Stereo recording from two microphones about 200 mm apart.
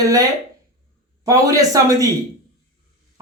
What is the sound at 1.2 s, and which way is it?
Speech, 15° right (ahead or behind).